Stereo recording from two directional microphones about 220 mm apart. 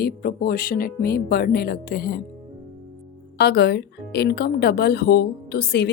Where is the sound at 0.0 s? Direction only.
45° left (ahead or behind).